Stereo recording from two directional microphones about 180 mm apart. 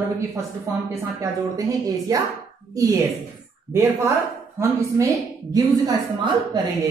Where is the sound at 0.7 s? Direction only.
15° right (ahead or behind).